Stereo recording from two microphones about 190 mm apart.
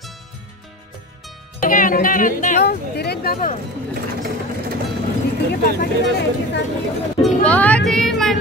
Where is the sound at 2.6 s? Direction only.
60° left (ahead or behind).